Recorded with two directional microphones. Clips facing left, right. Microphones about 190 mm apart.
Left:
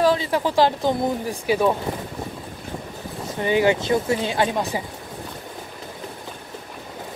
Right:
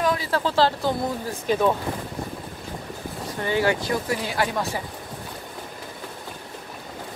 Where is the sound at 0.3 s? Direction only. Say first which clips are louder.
Left 2 dB; 15° left (ahead or behind).